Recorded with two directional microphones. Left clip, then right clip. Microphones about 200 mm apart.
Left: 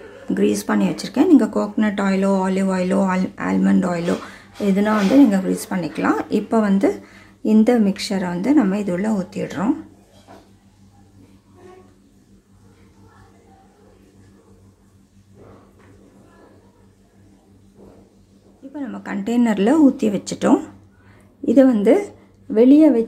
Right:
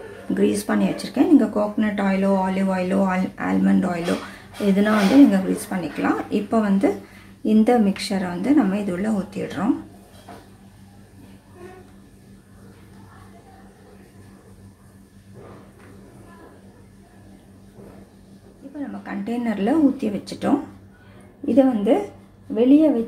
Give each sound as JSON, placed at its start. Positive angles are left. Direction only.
{"t": 0.3, "sound": "speech", "side_deg": 15}
{"t": 18.8, "sound": "speech", "side_deg": 40}
{"t": 21.5, "sound": "a woman's voice", "side_deg": 45}